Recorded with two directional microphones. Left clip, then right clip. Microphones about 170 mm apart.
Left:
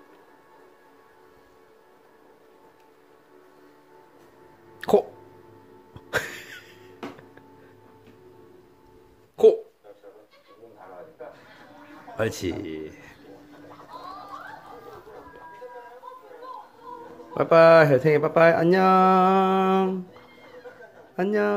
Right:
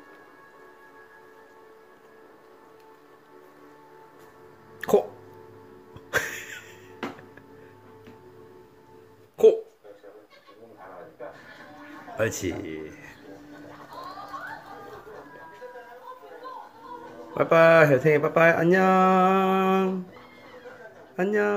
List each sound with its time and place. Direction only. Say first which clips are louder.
4.7 s hiccup: left 1 dB; 20° left (ahead or behind)
6.1 s a sound: right 1 dB; 25° left (ahead or behind)
9.4 s hiccup: left 1 dB; 20° left (ahead or behind)
12.2 s a sound: even; 25° left (ahead or behind)
17.3 s speech: left 3 dB; 25° left (ahead or behind)
21.2 s speech: left 1 dB; 25° left (ahead or behind)